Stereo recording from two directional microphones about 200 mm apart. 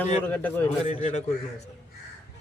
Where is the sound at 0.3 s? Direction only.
10° left (ahead or behind).